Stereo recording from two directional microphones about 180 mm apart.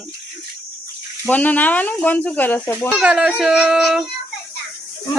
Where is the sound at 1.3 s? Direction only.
10° left (ahead or behind).